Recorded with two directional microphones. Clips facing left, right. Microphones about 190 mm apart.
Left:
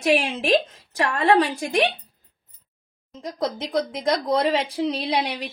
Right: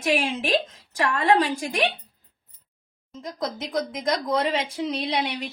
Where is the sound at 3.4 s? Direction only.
30° left (ahead or behind).